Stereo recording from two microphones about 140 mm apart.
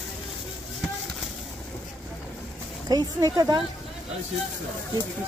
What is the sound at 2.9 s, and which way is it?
Speech, 25° right (ahead or behind).